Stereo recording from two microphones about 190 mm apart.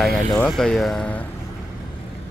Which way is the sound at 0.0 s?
Centre (ahead or behind).